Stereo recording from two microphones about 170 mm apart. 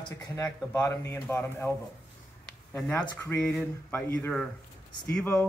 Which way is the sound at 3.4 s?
5° left (ahead or behind).